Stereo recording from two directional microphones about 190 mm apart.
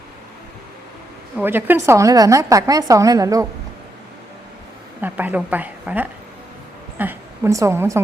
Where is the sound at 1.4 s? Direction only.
10° right (ahead or behind).